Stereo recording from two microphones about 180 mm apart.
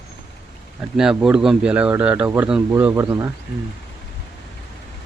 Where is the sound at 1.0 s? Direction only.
5° right (ahead or behind).